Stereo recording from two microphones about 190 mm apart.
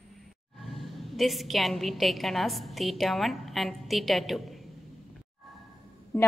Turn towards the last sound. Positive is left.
turn(degrees=10)  # may be behind; listen again after turning